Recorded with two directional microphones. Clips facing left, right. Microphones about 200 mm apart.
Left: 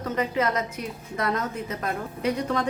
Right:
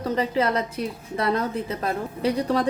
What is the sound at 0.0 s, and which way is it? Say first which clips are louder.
A woman's voice: right 2 dB; 30° right (ahead or behind).